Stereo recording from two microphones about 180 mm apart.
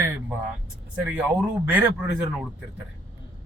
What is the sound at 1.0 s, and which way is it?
Speech, 5° right (ahead or behind).